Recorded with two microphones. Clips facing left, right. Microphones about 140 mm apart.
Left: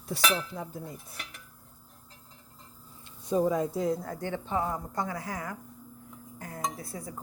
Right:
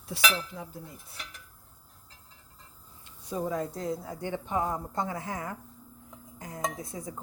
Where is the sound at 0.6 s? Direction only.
40° left (ahead or behind).